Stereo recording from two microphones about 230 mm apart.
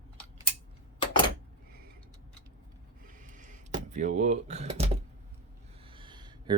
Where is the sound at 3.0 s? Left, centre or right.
Right.